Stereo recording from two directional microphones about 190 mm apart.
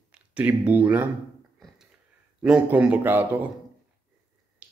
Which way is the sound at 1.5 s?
Centre (ahead or behind).